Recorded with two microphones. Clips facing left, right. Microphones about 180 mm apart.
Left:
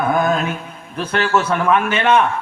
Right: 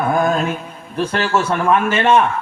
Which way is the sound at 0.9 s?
35° right (ahead or behind).